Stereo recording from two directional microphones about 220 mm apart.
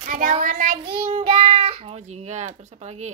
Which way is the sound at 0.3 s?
35° right (ahead or behind).